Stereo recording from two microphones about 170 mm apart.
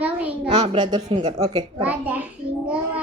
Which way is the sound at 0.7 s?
25° right (ahead or behind).